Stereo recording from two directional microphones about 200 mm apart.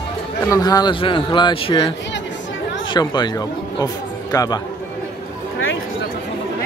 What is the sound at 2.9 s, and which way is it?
Speech, 20° left (ahead or behind).